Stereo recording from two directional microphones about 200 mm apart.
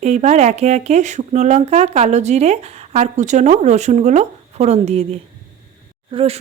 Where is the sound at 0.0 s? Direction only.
35° right (ahead or behind).